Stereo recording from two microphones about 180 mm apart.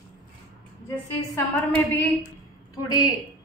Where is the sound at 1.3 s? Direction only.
10° left (ahead or behind).